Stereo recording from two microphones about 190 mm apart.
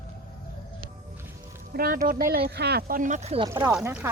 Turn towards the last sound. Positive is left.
turn(degrees=-10)  # may be behind; listen again after turning